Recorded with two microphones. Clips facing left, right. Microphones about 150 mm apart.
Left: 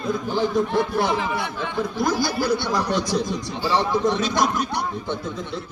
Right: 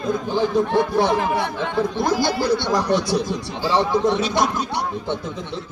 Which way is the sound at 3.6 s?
15° right (ahead or behind).